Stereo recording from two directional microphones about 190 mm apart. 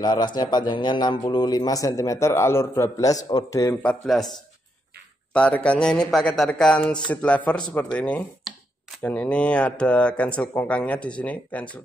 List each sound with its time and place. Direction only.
0.0 s a man's voice: 20° left (ahead or behind); by 4.2 s 5° left (ahead or behind)
5.3 s a man's voice: 5° left (ahead or behind)